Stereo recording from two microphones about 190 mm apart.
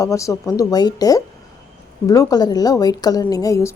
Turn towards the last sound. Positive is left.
turn(degrees=15)  # may be behind; listen again after turning